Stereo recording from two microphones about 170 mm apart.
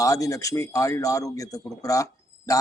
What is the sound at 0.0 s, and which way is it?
A man's voice, 20° left (ahead or behind).